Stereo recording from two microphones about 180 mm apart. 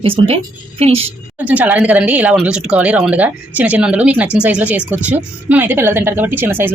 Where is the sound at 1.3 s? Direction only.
10° right (ahead or behind).